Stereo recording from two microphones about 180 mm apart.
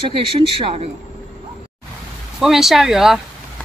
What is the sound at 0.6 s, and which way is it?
Speech, 30° right (ahead or behind).